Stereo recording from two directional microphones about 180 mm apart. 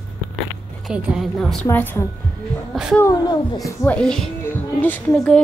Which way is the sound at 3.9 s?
5° left (ahead or behind).